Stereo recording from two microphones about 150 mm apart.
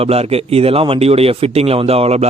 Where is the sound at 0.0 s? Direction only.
40° right (ahead or behind).